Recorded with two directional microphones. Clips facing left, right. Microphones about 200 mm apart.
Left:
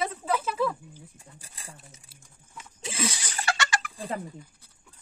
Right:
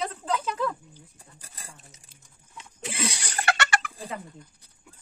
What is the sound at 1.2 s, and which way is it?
Speech, 40° right (ahead or behind).